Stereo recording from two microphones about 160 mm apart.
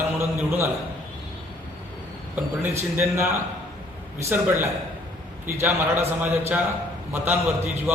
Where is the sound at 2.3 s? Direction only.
10° right (ahead or behind).